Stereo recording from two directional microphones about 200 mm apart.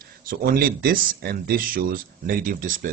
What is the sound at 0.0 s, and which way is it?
Speech, 50° right (ahead or behind).